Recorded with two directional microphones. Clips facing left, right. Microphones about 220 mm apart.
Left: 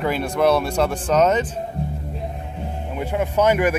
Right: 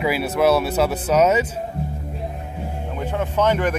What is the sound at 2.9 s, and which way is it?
Speech, 10° left (ahead or behind).